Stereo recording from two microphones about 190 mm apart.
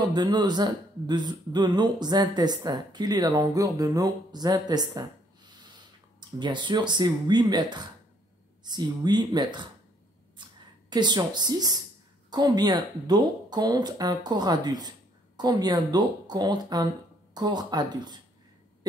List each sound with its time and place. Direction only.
0.0 s speech: 20° right (ahead or behind)
5.5 s snort: 25° right (ahead or behind)
6.4 s speech: 25° right (ahead or behind)
10.4 s a sound: 25° right (ahead or behind)
10.9 s speech: 25° right (ahead or behind)